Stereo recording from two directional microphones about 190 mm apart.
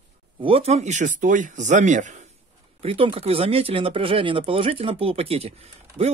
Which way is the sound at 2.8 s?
30° right (ahead or behind).